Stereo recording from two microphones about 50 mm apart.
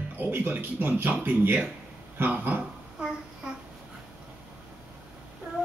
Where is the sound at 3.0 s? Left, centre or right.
Right.